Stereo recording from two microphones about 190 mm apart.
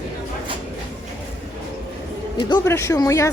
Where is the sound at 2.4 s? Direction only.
20° left (ahead or behind).